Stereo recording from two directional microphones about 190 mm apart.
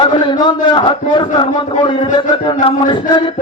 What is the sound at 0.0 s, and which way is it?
A man's voice, 25° left (ahead or behind).